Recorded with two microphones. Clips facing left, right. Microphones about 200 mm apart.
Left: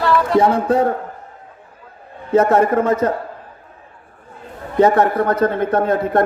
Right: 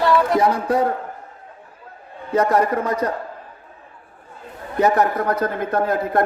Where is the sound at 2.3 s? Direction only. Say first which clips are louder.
Left 4 dB; 30° left (ahead or behind).